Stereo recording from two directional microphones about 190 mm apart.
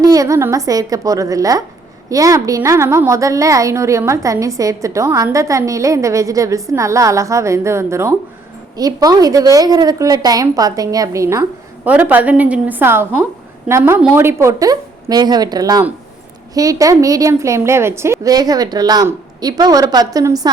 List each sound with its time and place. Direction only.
0.0 s a woman's voice: 20° right (ahead or behind)